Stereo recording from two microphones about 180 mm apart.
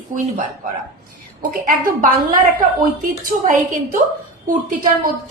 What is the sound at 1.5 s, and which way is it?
Speech, 50° right (ahead or behind).